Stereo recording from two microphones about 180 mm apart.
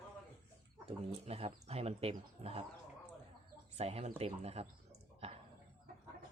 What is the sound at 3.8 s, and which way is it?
Speech, 35° right (ahead or behind).